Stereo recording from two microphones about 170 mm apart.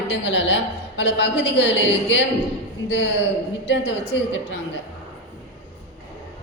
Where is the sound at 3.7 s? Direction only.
90° left.